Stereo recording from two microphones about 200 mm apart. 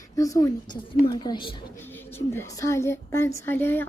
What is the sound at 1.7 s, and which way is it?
Speech, 10° left (ahead or behind).